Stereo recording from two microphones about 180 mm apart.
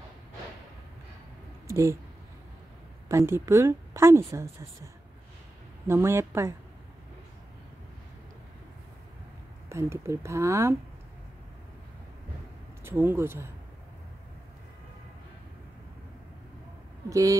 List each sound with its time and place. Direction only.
1.7 s speech: 15° right (ahead or behind)
3.1 s speech: 15° right (ahead or behind)
5.9 s speech: 15° right (ahead or behind)
9.7 s speech: 15° right (ahead or behind)
12.8 s speech: 10° right (ahead or behind)
17.1 s speech: 20° right (ahead or behind)